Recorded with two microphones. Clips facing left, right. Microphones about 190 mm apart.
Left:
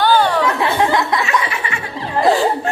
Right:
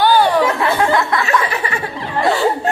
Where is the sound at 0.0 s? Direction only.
15° right (ahead or behind).